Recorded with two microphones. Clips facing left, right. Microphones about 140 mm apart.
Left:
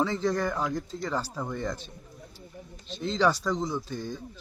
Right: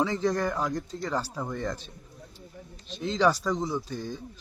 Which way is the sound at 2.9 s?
Centre (ahead or behind).